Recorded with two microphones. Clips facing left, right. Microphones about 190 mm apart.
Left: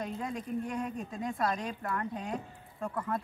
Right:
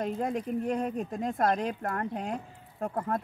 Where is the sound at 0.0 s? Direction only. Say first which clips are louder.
Right 6 dB; 55° right (ahead or behind).